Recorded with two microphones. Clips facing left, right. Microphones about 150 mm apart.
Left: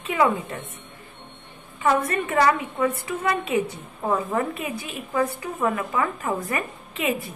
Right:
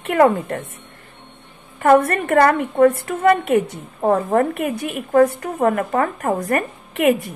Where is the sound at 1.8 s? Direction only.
55° right (ahead or behind).